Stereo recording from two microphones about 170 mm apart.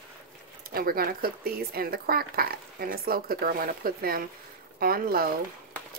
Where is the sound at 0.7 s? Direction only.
60° right (ahead or behind).